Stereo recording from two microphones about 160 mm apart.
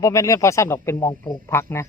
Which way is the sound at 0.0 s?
20° left (ahead or behind).